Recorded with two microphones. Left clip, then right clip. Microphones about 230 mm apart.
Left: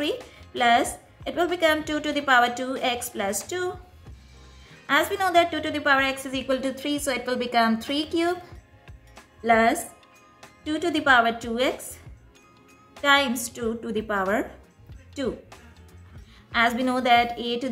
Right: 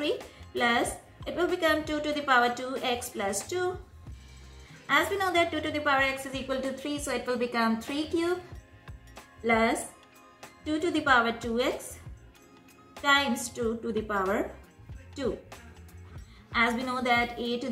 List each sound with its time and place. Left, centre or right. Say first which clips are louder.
0.5 s a woman's voice: left 6 dB; left
4.8 s a woman's voice: left 4 dB; left
9.4 s a woman's voice: left 6 dB; left
13.0 s a woman's voice: left 4 dB; left
16.5 s a woman's voice: left 5 dB; left